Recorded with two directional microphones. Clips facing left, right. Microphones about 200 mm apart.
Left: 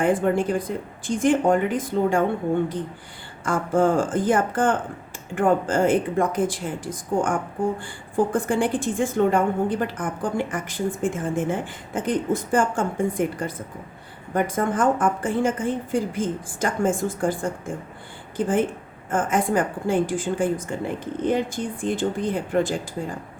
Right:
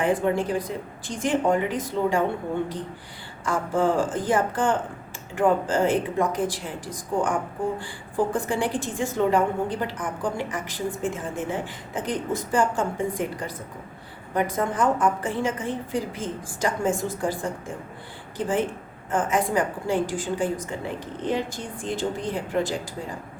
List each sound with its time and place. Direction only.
0.0 s a woman's voice: 50° left (ahead or behind)
3.4 s a woman's voice: 50° left (ahead or behind)
8.4 s a woman's voice: 50° left (ahead or behind)
14.3 s a woman's voice: 50° left (ahead or behind)
18.3 s a woman's voice: 50° left (ahead or behind)